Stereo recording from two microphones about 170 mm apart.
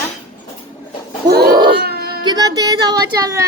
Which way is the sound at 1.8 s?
65° right (ahead or behind).